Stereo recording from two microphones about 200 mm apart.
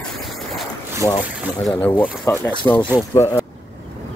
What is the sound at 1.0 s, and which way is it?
Speech, 15° left (ahead or behind).